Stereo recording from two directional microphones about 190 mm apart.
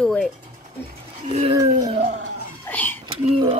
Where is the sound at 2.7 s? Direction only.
10° left (ahead or behind).